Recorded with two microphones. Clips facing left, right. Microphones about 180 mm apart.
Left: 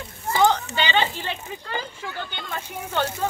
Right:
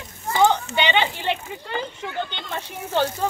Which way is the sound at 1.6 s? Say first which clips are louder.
Right 3 dB; 20° right (ahead or behind).